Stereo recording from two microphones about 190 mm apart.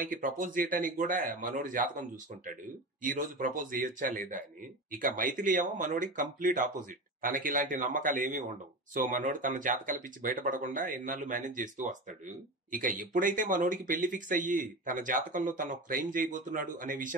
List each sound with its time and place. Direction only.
0.0 s speech: 45° right (ahead or behind)
3.0 s speech: 45° right (ahead or behind)